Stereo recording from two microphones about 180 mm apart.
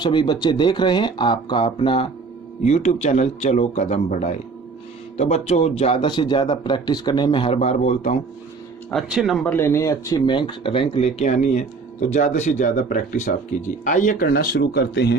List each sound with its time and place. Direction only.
0.0 s speech: 25° left (ahead or behind); by 8.2 s 40° left (ahead or behind)
8.9 s speech: centre (ahead or behind); by 14.3 s 45° left (ahead or behind)
14.3 s speech: 60° left (ahead or behind)